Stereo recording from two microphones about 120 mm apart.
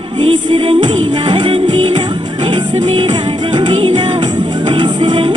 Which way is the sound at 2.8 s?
55° right (ahead or behind).